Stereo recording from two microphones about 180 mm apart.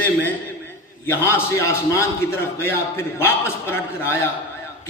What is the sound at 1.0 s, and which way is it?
A man's voice, 15° left (ahead or behind).